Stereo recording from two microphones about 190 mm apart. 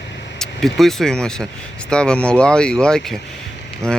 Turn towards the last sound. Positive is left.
turn(degrees=5)  # may be behind; listen again after turning